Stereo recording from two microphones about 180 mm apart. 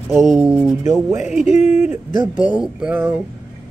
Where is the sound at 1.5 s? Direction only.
40° left (ahead or behind).